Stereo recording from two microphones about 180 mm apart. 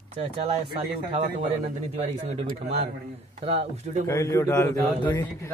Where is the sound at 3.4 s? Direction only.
35° right (ahead or behind).